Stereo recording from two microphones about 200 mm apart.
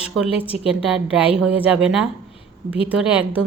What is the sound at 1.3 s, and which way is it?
A woman's voice, 5° right (ahead or behind).